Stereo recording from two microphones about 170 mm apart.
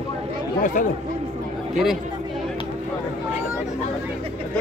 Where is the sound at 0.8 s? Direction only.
50° left (ahead or behind).